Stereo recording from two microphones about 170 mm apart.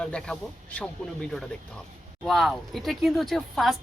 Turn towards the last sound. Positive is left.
turn(degrees=0)  # may be behind; listen again after turning